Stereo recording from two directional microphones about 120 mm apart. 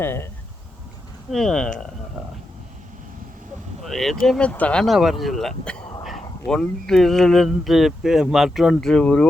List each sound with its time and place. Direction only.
0.0 s speech: 20° left (ahead or behind)
1.3 s speech: 5° left (ahead or behind)
3.8 s speech: centre (ahead or behind)